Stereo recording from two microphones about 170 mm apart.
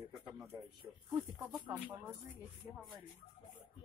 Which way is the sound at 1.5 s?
25° right (ahead or behind).